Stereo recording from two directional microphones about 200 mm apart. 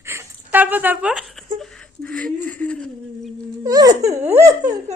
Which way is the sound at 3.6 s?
15° right (ahead or behind).